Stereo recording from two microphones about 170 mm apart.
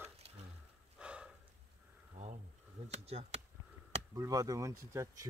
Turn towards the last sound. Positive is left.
turn(degrees=-20)  # may be behind; listen again after turning